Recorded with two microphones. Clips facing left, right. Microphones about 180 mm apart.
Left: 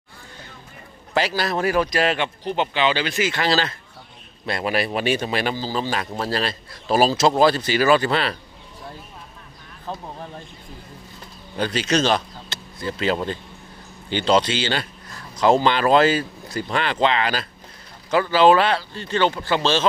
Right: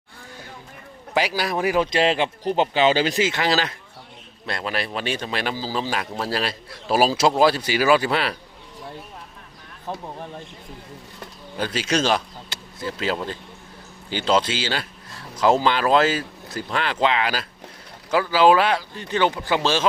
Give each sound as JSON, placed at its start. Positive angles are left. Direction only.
{"t": 1.1, "sound": "speech", "side_deg": -10}
{"t": 3.2, "sound": "speech", "side_deg": -20}
{"t": 4.4, "sound": "a man's voice", "side_deg": 5}
{"t": 11.5, "sound": "speech", "side_deg": -5}